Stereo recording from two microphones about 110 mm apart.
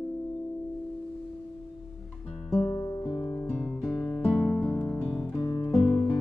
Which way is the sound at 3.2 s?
5° left (ahead or behind).